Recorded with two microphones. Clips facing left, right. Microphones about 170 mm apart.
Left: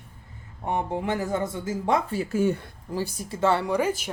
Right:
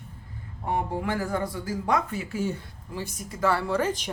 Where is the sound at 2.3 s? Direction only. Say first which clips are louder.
Left 8 dB; 50° left (ahead or behind).